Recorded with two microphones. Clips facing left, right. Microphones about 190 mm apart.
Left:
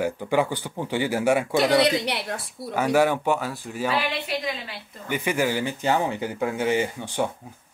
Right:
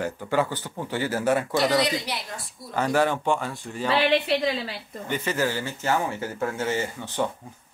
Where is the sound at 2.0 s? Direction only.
65° left (ahead or behind).